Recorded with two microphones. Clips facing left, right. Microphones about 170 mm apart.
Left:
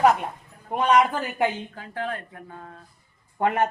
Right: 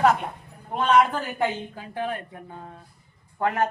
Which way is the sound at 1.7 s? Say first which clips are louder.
Right 1 dB; 15° right (ahead or behind).